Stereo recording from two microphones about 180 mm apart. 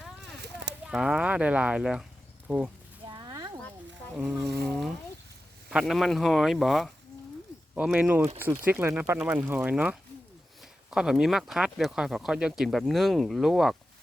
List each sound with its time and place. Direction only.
0.9 s speech: 5° right (ahead or behind)
3.1 s a sound: 20° right (ahead or behind)
4.2 s speech: 5° right (ahead or behind)